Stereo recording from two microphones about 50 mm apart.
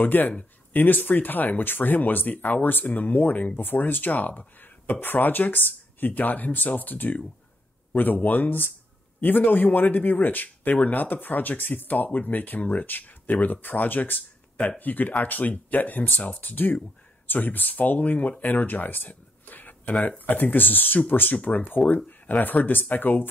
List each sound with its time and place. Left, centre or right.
0.0 s speech: left